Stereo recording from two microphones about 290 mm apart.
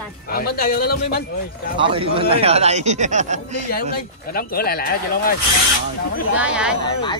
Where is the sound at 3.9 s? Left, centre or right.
Left.